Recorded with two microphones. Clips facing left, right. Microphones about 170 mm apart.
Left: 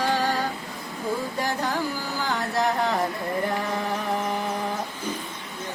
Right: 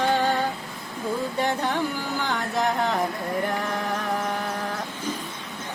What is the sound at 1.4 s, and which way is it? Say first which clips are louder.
Carnatic music: right 4 dB; 5° left (ahead or behind).